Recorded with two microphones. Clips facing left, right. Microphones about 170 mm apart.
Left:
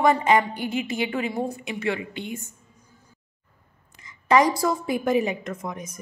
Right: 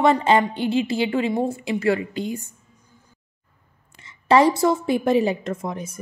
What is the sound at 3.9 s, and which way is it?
A woman's voice, 30° right (ahead or behind).